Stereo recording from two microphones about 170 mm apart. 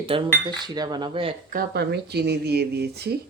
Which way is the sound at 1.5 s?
70° right (ahead or behind).